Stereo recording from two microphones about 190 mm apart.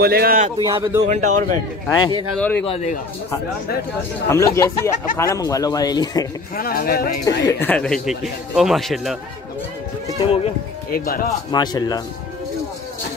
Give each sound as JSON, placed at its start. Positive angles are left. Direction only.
{"t": 0.0, "sound": "speech", "side_deg": -55}
{"t": 0.7, "sound": "a man's voice", "side_deg": -20}
{"t": 1.0, "sound": "speech", "side_deg": -40}
{"t": 1.9, "sound": "speech", "side_deg": 20}
{"t": 2.3, "sound": "speech", "side_deg": 10}
{"t": 2.6, "sound": "a man's voice", "side_deg": 35}
{"t": 4.3, "sound": "speech", "side_deg": 15}
{"t": 6.5, "sound": "speech", "side_deg": 50}
{"t": 7.2, "sound": "speech", "side_deg": 20}
{"t": 7.7, "sound": "speech", "side_deg": 5}
{"t": 10.9, "sound": "speech", "side_deg": 50}
{"t": 11.5, "sound": "speech", "side_deg": 20}